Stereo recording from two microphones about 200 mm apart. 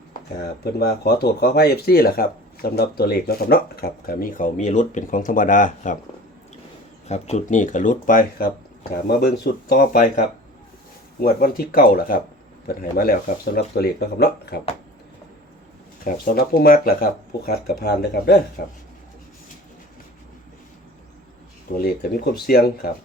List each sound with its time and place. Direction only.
0.6 s speech: 50° left (ahead or behind)
7.1 s speech: 35° left (ahead or behind)
11.2 s speech: 45° left (ahead or behind)
16.0 s speech: 45° left (ahead or behind)
21.7 s speech: 50° left (ahead or behind)